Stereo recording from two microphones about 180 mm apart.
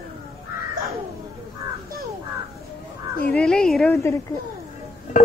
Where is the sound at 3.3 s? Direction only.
5° left (ahead or behind).